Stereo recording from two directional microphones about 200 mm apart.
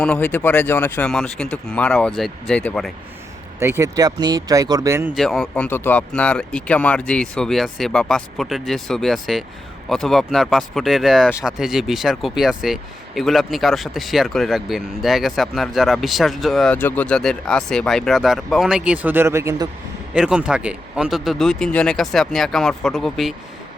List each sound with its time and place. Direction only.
0.0 s speech: 5° left (ahead or behind)
3.6 s speech: 15° right (ahead or behind)
5.1 s speech: centre (ahead or behind)